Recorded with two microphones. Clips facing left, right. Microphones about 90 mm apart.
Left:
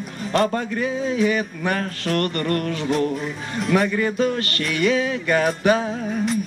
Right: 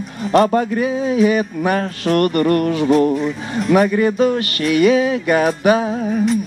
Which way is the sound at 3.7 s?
20° right (ahead or behind).